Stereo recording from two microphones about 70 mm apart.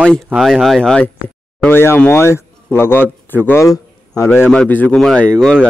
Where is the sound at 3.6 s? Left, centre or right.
Left.